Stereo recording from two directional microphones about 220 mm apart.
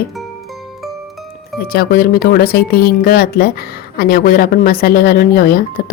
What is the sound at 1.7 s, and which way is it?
A woman's voice, 40° left (ahead or behind).